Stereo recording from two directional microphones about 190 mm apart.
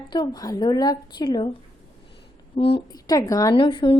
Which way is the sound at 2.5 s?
30° left (ahead or behind).